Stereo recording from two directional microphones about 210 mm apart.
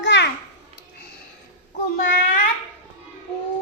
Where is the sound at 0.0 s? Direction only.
60° left (ahead or behind).